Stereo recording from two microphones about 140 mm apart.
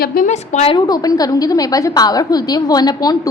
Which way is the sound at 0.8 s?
25° left (ahead or behind).